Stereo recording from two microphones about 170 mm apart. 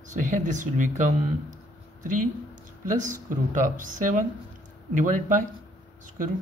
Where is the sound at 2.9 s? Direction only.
50° right (ahead or behind).